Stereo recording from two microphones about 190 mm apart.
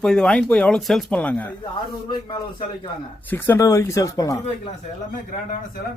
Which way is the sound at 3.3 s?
10° left (ahead or behind).